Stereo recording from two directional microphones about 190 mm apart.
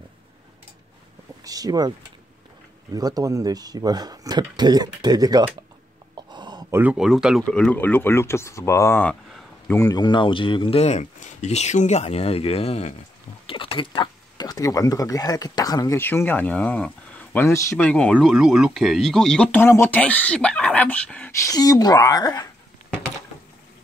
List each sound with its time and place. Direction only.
1.4 s vehicle: 20° right (ahead or behind)
2.9 s speech: 20° right (ahead or behind)
6.3 s a sound: 20° right (ahead or behind)
6.8 s speech: 5° right (ahead or behind)
21.5 s speech: 20° left (ahead or behind)